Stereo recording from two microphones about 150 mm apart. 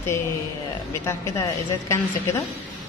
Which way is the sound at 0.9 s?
20° left (ahead or behind).